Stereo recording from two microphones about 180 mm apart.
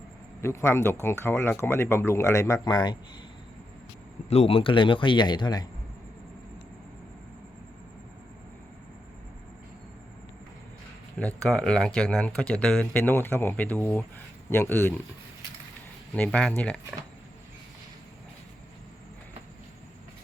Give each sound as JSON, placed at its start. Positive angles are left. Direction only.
{"t": 0.4, "sound": "speech", "side_deg": 15}
{"t": 4.3, "sound": "speech", "side_deg": 35}
{"t": 11.2, "sound": "speech", "side_deg": 5}
{"t": 16.1, "sound": "speech", "side_deg": 5}